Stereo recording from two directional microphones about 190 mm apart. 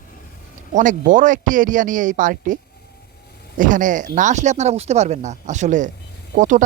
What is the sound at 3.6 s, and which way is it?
Speech, 45° right (ahead or behind).